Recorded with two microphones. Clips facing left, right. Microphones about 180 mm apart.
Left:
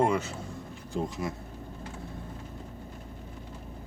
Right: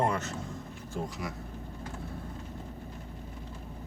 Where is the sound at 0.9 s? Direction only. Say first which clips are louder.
Left 4 dB; 25° left (ahead or behind).